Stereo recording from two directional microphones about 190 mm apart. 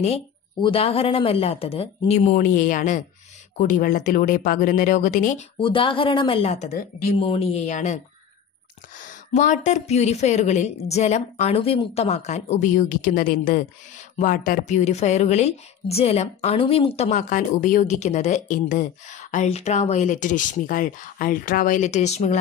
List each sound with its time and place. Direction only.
0.0 s a woman's voice: 30° left (ahead or behind)
5.6 s a woman's voice: 25° left (ahead or behind)